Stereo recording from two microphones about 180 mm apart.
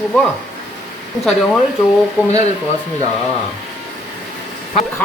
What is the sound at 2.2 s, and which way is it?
Speech, 10° right (ahead or behind).